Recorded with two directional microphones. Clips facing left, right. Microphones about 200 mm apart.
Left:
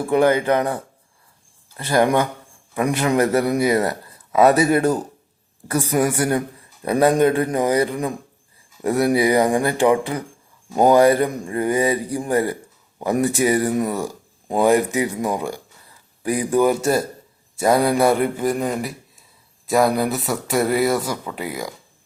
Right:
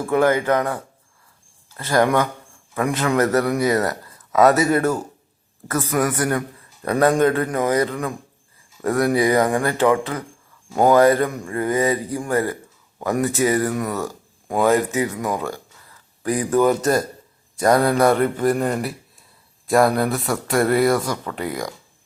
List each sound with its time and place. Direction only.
0.0 s a man's voice: 15° left (ahead or behind)
4.7 s speech: 15° left (ahead or behind)